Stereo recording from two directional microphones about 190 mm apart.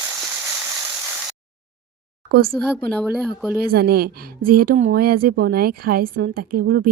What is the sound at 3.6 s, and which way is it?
A woman's voice, 55° right (ahead or behind).